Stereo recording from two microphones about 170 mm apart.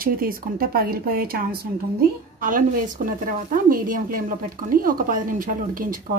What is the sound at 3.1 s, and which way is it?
A woman's voice, 55° right (ahead or behind).